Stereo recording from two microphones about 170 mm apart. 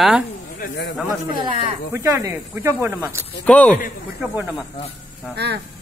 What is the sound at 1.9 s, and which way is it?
Speech, 15° right (ahead or behind).